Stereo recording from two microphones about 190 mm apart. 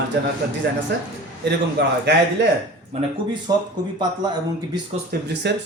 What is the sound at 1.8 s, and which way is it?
Speech, 65° right (ahead or behind).